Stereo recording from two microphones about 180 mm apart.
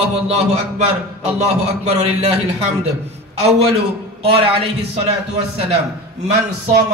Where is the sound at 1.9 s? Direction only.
35° right (ahead or behind).